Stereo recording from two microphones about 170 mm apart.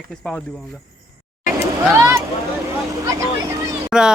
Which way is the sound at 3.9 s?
5° right (ahead or behind).